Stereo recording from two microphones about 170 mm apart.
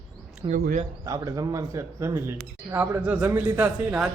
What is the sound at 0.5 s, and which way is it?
Speech, 50° right (ahead or behind).